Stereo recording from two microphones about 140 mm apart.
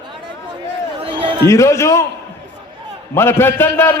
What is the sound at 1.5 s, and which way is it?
Speech, 20° left (ahead or behind).